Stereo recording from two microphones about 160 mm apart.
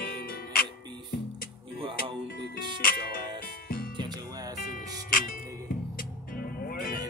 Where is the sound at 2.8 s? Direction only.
65° left (ahead or behind).